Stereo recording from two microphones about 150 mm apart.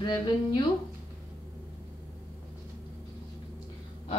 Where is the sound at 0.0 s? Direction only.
30° left (ahead or behind).